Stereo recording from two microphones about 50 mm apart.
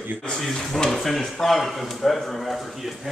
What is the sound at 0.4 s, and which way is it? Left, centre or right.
Speech, centre.